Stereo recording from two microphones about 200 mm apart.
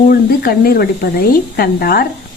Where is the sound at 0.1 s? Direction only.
50° left (ahead or behind).